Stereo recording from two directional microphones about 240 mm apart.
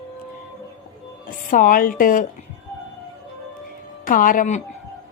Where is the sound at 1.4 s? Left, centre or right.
Left.